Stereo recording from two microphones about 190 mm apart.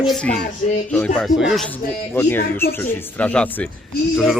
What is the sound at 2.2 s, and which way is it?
Speech, 10° left (ahead or behind).